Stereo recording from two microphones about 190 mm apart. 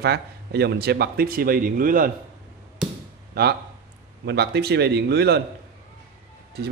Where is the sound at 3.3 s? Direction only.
55° right (ahead or behind).